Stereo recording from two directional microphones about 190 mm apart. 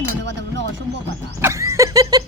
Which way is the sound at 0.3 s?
70° right (ahead or behind).